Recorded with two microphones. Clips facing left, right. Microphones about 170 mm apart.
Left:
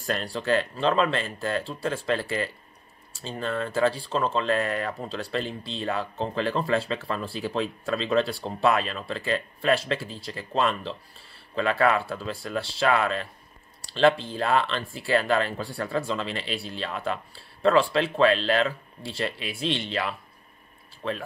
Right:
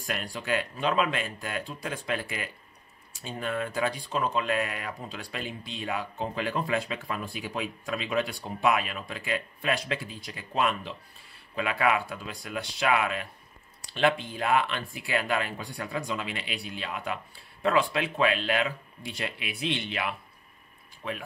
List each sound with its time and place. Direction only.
0.0 s speech: 15° right (ahead or behind)